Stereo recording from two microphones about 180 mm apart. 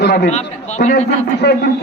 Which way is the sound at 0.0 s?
65° left (ahead or behind).